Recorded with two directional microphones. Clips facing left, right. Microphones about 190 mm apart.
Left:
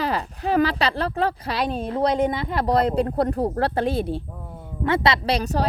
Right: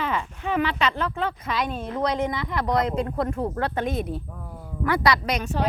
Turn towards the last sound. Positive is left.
turn(degrees=35)  # may be behind; listen again after turning